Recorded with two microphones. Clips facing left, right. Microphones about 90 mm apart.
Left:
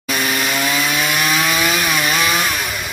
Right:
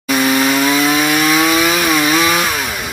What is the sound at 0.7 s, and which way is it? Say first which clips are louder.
Chainsaw: right 6 dB; 20° right (ahead or behind).